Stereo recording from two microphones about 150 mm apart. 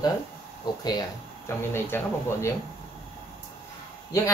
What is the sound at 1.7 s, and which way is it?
Speech, 15° left (ahead or behind).